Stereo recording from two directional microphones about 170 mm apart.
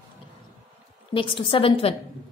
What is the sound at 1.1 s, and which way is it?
Speech, 30° left (ahead or behind).